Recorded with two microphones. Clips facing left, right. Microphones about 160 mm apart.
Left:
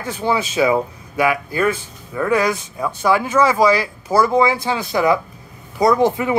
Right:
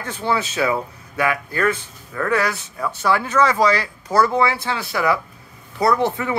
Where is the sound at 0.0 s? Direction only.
10° left (ahead or behind).